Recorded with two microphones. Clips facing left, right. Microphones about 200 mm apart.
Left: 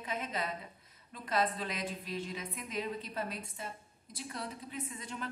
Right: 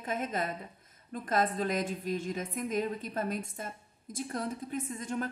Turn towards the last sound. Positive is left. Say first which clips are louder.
# right 7 dB
turn(degrees=-45)  # may be behind; listen again after turning